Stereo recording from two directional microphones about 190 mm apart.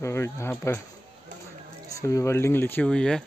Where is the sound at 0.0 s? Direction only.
15° left (ahead or behind).